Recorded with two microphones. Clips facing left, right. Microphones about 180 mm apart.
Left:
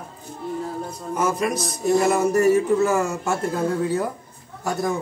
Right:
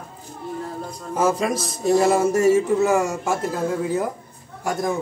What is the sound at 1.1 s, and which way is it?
A man's voice, 30° right (ahead or behind).